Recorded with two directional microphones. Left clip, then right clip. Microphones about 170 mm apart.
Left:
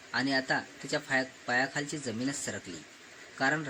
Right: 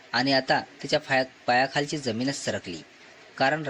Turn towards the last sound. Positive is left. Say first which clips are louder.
# right 5 dB
turn(degrees=-30)  # may be behind; listen again after turning